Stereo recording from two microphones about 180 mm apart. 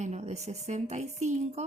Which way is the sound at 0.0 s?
40° right (ahead or behind).